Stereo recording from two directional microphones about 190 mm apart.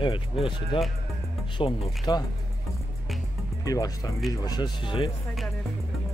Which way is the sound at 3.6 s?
20° left (ahead or behind).